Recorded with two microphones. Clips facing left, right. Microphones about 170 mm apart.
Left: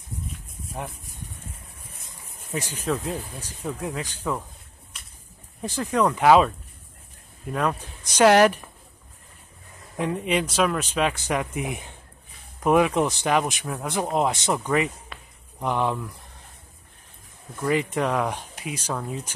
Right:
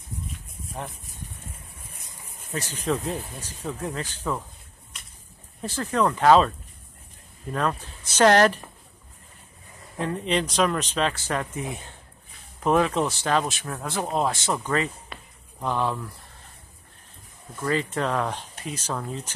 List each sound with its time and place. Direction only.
2.5 s speech: 15° left (ahead or behind)
5.6 s speech: 15° left (ahead or behind)
7.5 s speech: 10° left (ahead or behind)
9.9 s speech: 15° left (ahead or behind)
15.1 s a sound: centre (ahead or behind)
15.6 s speech: 15° left (ahead or behind)
17.6 s speech: 15° left (ahead or behind)